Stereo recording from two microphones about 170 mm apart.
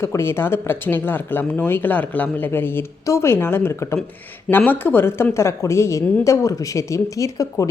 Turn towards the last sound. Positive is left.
turn(degrees=20)  # may be behind; listen again after turning